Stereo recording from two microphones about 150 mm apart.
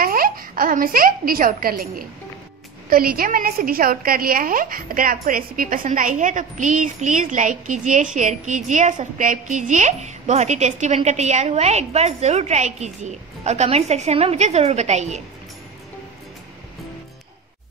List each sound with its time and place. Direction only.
0.0 s a woman's voice: 75° right (ahead or behind); by 15.2 s 50° right (ahead or behind)